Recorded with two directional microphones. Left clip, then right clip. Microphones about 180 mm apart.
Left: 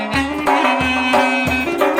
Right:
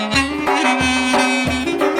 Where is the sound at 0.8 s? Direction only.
40° right (ahead or behind).